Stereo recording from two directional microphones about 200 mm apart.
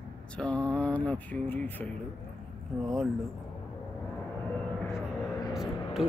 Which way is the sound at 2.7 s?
10° right (ahead or behind).